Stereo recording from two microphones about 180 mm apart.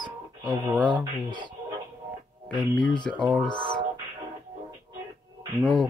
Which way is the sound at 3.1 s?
5° left (ahead or behind).